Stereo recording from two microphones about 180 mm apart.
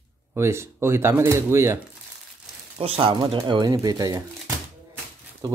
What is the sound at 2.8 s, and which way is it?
Speech, 30° right (ahead or behind).